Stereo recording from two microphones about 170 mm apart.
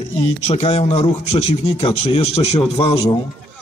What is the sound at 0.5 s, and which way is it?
A man's voice, 40° left (ahead or behind).